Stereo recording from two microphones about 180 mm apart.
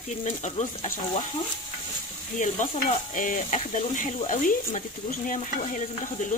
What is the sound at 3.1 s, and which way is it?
Speech, 45° left (ahead or behind).